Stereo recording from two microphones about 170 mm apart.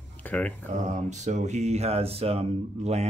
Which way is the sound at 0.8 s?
45° right (ahead or behind).